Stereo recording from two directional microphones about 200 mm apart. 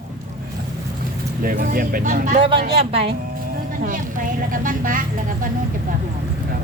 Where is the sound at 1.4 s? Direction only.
45° right (ahead or behind).